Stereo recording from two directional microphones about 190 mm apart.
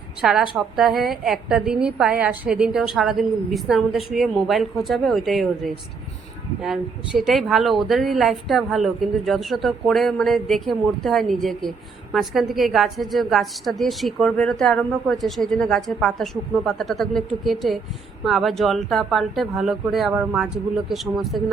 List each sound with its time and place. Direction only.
0.2 s a woman's voice: centre (ahead or behind)